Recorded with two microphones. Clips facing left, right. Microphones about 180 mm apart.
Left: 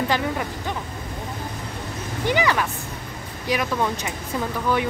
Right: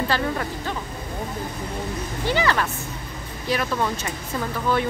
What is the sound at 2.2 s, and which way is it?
Speech, 15° left (ahead or behind).